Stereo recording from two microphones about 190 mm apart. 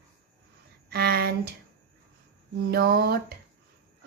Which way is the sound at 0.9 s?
55° right (ahead or behind).